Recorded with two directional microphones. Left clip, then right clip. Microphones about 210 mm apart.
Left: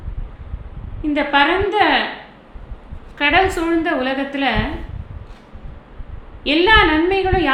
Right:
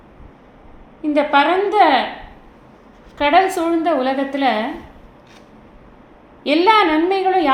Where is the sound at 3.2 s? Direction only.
30° right (ahead or behind).